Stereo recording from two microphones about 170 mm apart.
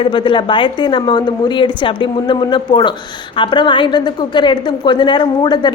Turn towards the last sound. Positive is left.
turn(degrees=25)  # may be behind; listen again after turning